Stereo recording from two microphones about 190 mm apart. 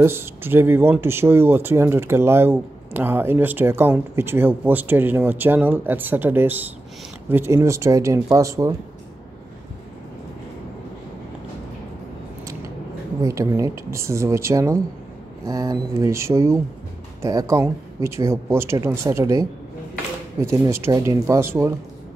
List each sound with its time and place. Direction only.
0.0 s speech: 10° right (ahead or behind)
13.2 s speech: 15° right (ahead or behind)
20.4 s speech: 15° right (ahead or behind)